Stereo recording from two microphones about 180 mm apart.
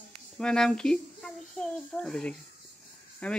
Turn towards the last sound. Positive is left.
turn(degrees=5)  # may be behind; listen again after turning